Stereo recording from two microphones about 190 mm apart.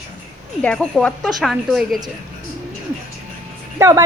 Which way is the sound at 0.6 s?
5° left (ahead or behind).